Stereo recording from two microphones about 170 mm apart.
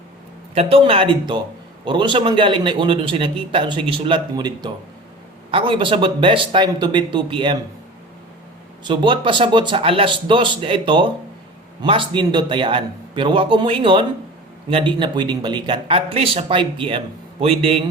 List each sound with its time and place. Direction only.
0.5 s a man's voice: 35° right (ahead or behind)
8.8 s a man's voice: 30° right (ahead or behind)